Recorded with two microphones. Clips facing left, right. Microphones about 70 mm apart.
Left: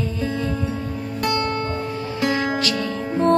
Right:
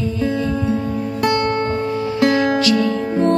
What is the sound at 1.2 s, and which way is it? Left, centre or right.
Music, right.